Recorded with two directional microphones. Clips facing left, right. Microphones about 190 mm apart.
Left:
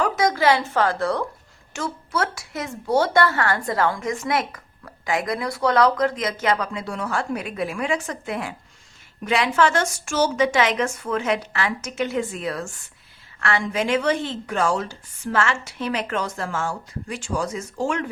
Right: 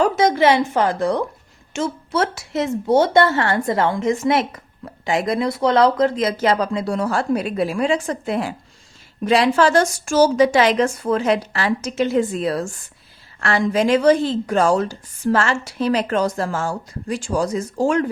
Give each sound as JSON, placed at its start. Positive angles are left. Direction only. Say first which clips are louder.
{"t": 0.0, "sound": "a woman's voice", "louder": "right 4 dB", "side_deg": -25}